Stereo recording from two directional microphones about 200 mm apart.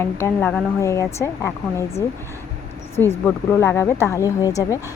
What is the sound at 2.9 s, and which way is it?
Speech, 10° left (ahead or behind).